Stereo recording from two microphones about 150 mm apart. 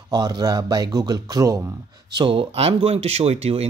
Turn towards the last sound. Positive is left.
turn(degrees=-45)  # may be behind; listen again after turning